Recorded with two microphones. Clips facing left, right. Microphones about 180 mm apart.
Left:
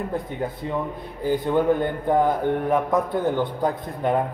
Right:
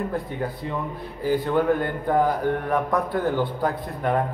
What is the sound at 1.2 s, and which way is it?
A man's voice, 20° left (ahead or behind).